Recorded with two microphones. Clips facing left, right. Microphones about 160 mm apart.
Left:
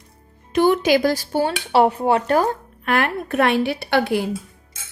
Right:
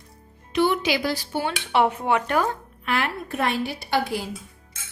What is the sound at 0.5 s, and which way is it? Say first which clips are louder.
Speech: left 6 dB; 45° left (ahead or behind).